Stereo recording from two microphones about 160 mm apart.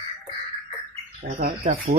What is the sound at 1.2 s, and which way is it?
Speech, 60° right (ahead or behind).